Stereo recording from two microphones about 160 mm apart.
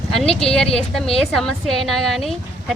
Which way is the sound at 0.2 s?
5° left (ahead or behind).